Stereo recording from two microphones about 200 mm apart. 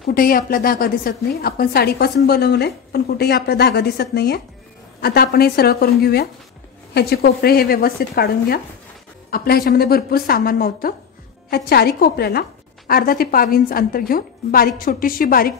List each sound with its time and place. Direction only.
0.0 s a woman's voice: 45° left (ahead or behind)